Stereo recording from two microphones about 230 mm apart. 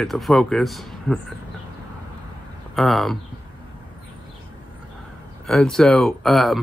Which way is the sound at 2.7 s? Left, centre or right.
Centre.